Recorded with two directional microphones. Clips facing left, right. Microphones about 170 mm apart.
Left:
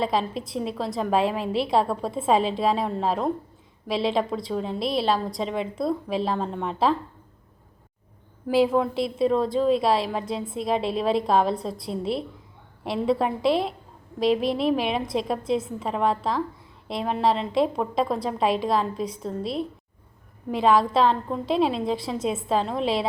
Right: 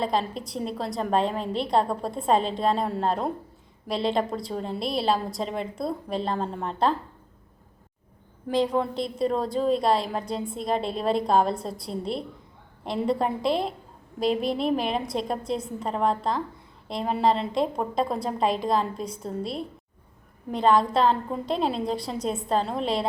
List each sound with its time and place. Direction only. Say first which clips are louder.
0.0 s a woman's voice: left 1 dB; centre (ahead or behind)
8.4 s a woman's voice: left 3 dB; 5° left (ahead or behind)